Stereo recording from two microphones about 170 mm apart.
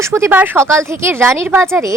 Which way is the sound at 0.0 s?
15° right (ahead or behind).